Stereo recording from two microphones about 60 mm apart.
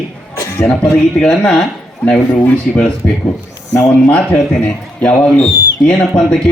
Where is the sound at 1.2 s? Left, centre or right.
Centre.